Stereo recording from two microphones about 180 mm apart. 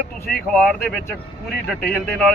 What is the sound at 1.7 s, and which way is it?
Speech, 10° left (ahead or behind).